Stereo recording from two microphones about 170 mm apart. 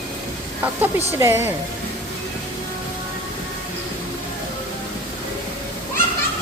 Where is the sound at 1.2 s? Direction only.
15° right (ahead or behind).